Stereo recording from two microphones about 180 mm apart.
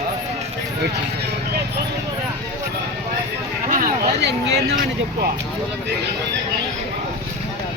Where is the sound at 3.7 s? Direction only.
50° right (ahead or behind).